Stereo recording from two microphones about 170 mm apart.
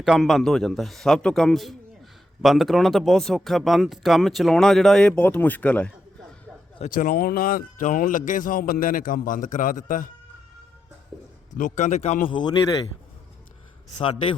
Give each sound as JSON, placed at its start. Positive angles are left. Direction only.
{"t": 0.0, "sound": "speech", "side_deg": 0}
{"t": 6.9, "sound": "speech", "side_deg": 55}
{"t": 11.5, "sound": "speech", "side_deg": 45}
{"t": 14.0, "sound": "a man's voice", "side_deg": 30}